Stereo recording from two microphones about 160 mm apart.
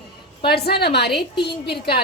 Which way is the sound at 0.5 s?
85° left.